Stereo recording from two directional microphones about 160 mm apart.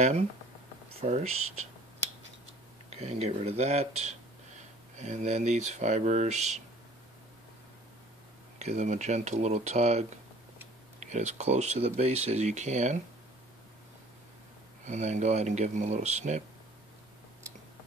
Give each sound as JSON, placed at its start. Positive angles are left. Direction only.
{"t": 1.0, "sound": "speech", "side_deg": -40}
{"t": 2.9, "sound": "speech", "side_deg": -40}
{"t": 8.5, "sound": "speech", "side_deg": -45}
{"t": 14.9, "sound": "speech", "side_deg": -50}